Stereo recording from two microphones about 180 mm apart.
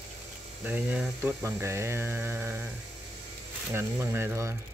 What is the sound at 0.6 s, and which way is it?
Mantra, 10° right (ahead or behind).